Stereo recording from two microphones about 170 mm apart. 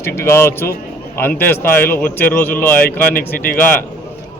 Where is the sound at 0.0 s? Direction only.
15° left (ahead or behind).